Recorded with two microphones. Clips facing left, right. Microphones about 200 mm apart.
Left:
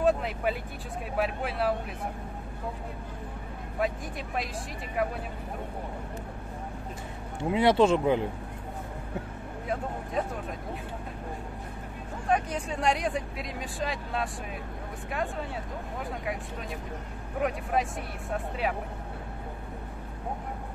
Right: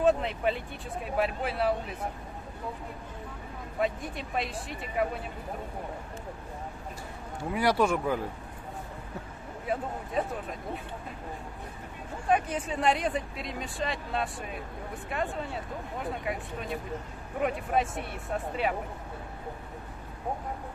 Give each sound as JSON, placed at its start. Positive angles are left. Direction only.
{"t": 0.0, "sound": "vehicle", "side_deg": 5}
{"t": 1.1, "sound": "speech", "side_deg": 0}
{"t": 3.8, "sound": "speech", "side_deg": 0}
{"t": 7.4, "sound": "speech", "side_deg": 25}
{"t": 10.2, "sound": "speech", "side_deg": 0}
{"t": 12.3, "sound": "speech", "side_deg": -5}
{"t": 17.4, "sound": "speech", "side_deg": 0}